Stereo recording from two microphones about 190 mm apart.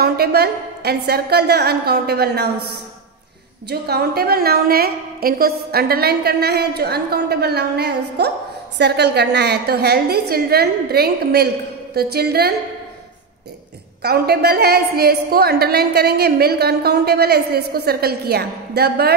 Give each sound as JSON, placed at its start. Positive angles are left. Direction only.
{"t": 0.0, "sound": "a woman's voice", "side_deg": -55}
{"t": 14.0, "sound": "a woman's voice", "side_deg": -55}